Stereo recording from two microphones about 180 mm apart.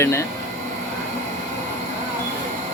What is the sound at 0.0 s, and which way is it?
Speech, 15° left (ahead or behind).